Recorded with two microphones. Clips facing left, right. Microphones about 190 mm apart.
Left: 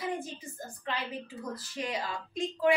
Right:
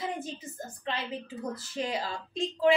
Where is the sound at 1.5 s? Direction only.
25° right (ahead or behind).